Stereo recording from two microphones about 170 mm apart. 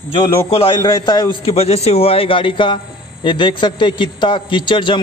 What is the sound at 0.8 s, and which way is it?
A man's voice, 25° left (ahead or behind).